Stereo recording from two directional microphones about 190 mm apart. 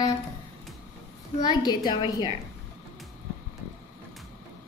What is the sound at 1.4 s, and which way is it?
Speech, 20° left (ahead or behind).